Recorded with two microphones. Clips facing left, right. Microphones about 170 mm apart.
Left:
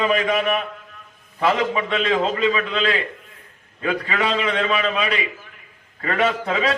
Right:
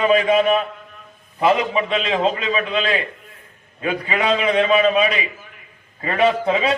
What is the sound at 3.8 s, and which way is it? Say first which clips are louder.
A man's voice: right 2 dB; 15° right (ahead or behind).